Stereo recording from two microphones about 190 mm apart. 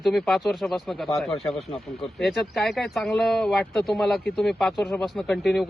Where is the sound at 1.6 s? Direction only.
30° left (ahead or behind).